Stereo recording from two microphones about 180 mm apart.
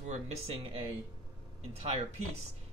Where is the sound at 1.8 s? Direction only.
40° right (ahead or behind).